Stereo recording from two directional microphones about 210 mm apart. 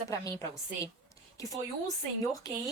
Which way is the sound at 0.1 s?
15° left (ahead or behind).